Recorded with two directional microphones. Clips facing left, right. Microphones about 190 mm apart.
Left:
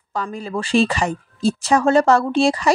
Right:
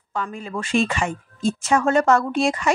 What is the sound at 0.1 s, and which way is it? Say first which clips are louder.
Speech: left 3 dB; 35° left (ahead or behind).